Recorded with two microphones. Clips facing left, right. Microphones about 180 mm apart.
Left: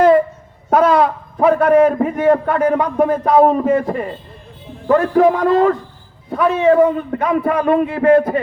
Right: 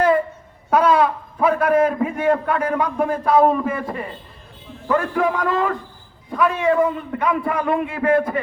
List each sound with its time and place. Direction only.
0.7 s a man's voice: 40° left (ahead or behind)